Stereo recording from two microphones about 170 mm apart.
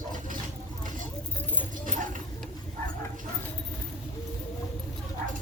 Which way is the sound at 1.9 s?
50° right (ahead or behind).